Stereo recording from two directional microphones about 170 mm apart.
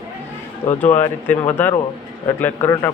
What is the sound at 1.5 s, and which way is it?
Speech, 10° left (ahead or behind).